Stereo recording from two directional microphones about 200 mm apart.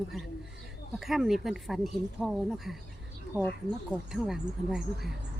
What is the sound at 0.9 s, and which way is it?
Speech, centre (ahead or behind).